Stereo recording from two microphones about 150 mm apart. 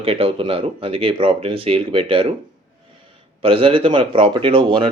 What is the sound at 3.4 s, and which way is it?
Speech, 40° right (ahead or behind).